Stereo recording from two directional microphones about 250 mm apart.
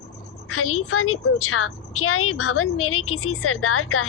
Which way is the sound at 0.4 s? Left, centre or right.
Left.